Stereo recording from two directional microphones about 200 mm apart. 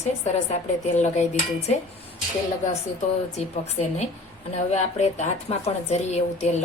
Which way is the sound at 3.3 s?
35° left (ahead or behind).